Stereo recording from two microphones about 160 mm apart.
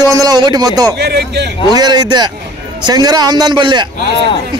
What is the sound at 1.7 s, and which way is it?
A man's voice, 25° right (ahead or behind).